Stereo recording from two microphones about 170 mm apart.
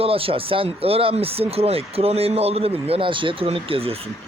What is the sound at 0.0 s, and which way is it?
Speech, 35° right (ahead or behind).